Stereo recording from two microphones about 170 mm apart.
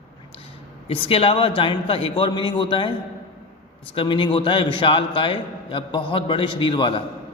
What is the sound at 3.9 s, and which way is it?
A man's voice, 30° left (ahead or behind).